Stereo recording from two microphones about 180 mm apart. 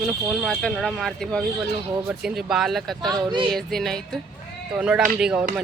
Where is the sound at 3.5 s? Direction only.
Centre (ahead or behind).